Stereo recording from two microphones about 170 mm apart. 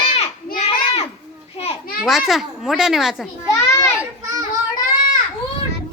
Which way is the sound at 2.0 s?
Centre (ahead or behind).